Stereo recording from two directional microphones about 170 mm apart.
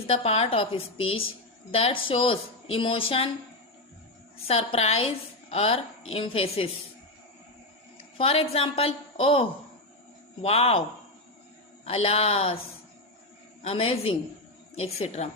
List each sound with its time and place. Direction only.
0.1 s a woman's voice: 35° left (ahead or behind)
4.4 s a woman's voice: 35° left (ahead or behind)
8.2 s a woman's voice: 35° left (ahead or behind)
11.9 s a woman's voice: 35° left (ahead or behind)
13.6 s a woman's voice: 35° left (ahead or behind)